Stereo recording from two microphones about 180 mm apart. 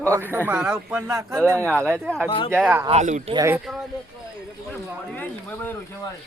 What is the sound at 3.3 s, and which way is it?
Speech, 15° right (ahead or behind).